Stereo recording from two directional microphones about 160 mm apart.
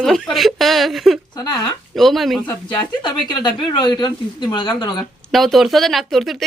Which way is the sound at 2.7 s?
25° left (ahead or behind).